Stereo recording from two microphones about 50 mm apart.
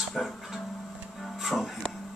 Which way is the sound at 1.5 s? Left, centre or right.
Centre.